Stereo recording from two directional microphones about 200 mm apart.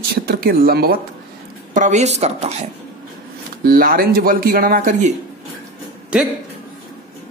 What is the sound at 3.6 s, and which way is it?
A woman's voice, 45° right (ahead or behind).